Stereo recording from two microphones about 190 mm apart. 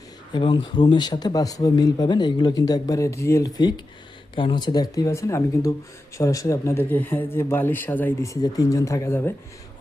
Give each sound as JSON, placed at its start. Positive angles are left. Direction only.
{"t": 0.3, "sound": "speech", "side_deg": 25}